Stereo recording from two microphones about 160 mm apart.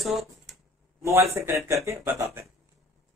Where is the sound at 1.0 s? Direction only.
15° right (ahead or behind).